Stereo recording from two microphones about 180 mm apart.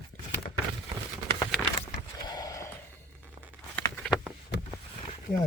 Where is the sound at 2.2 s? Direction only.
20° left (ahead or behind).